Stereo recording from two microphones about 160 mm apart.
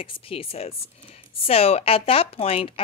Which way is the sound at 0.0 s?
35° left (ahead or behind).